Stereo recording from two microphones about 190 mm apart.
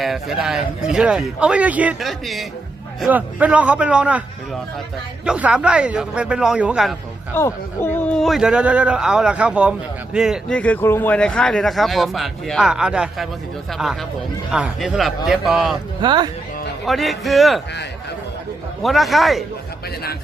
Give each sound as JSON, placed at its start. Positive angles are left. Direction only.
{"t": 0.0, "sound": "a man's voice", "side_deg": 0}
{"t": 5.2, "sound": "speech", "side_deg": -5}
{"t": 7.3, "sound": "speech", "side_deg": 10}
{"t": 16.0, "sound": "speech", "side_deg": -25}
{"t": 16.8, "sound": "speech", "side_deg": 0}
{"t": 18.8, "sound": "speech", "side_deg": 0}